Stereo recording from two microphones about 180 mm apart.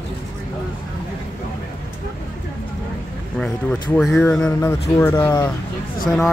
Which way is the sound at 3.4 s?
5° left (ahead or behind).